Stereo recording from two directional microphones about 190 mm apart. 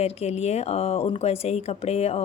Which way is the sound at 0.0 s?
35° left (ahead or behind).